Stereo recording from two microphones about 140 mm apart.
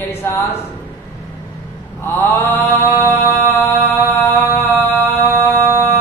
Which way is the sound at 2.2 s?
15° left (ahead or behind).